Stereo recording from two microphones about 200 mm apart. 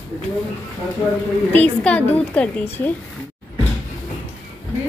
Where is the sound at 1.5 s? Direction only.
5° left (ahead or behind).